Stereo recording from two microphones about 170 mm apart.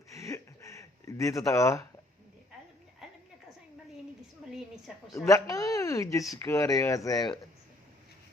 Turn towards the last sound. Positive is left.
turn(degrees=20)  # may be behind; listen again after turning